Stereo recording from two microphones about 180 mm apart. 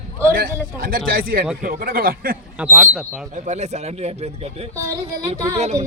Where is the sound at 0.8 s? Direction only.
55° right (ahead or behind).